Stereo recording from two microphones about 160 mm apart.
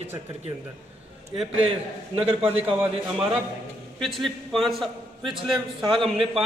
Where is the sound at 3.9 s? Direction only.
Centre (ahead or behind).